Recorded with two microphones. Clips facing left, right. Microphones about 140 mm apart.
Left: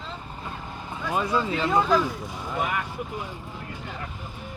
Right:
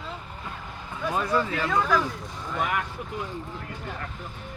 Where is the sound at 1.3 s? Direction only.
15° left (ahead or behind).